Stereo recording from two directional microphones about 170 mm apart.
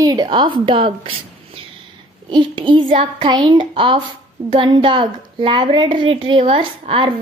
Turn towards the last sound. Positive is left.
turn(degrees=-30)  # may be behind; listen again after turning